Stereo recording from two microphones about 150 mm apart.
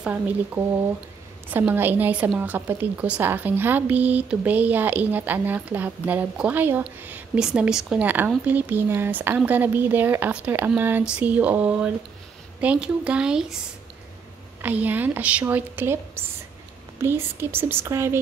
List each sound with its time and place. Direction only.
1.5 s a woman's voice: 15° right (ahead or behind)
14.6 s a woman's voice: 10° right (ahead or behind)